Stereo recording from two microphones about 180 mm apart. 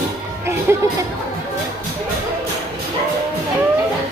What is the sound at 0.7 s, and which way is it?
Speech, 10° right (ahead or behind).